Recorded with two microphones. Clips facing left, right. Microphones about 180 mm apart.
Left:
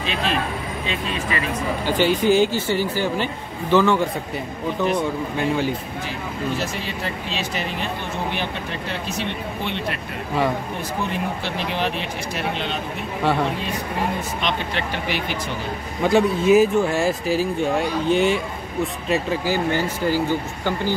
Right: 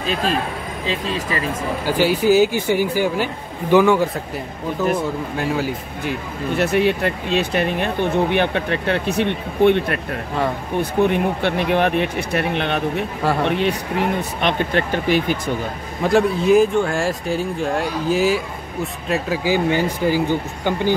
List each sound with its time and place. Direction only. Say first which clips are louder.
0.0 s speech: right 3 dB; 40° right (ahead or behind)
1.9 s speech: right 2 dB; 5° right (ahead or behind)
6.0 s speech: right 4 dB; 60° right (ahead or behind)
13.5 s speech: right 7 dB; 75° right (ahead or behind)
14.4 s speech: right 8 dB; 50° right (ahead or behind)
16.0 s speech: right 1 dB; centre (ahead or behind)
19.5 s speech: right 5 dB; 15° right (ahead or behind)